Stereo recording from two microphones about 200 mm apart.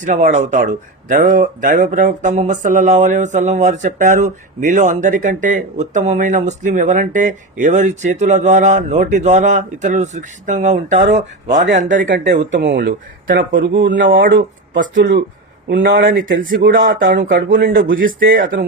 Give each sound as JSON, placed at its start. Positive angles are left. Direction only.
{"t": 0.0, "sound": "speech", "side_deg": -40}
{"t": 10.9, "sound": "speech", "side_deg": -60}
{"t": 11.8, "sound": "speech", "side_deg": -40}
{"t": 12.1, "sound": "speech", "side_deg": -60}